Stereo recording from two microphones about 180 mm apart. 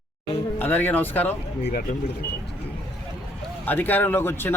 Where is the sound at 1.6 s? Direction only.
65° left (ahead or behind).